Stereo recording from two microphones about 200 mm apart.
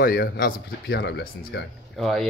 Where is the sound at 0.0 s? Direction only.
45° left (ahead or behind).